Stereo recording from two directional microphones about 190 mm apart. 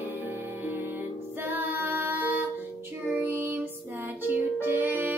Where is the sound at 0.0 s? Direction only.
10° right (ahead or behind).